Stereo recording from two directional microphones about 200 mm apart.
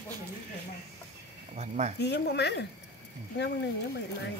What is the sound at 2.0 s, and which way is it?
Speech, 55° left (ahead or behind).